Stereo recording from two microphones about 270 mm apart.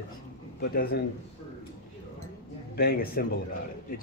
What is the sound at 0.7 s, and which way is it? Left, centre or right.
Speech, left.